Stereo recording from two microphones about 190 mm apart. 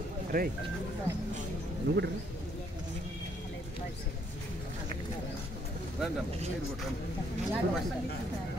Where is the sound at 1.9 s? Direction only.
60° right (ahead or behind).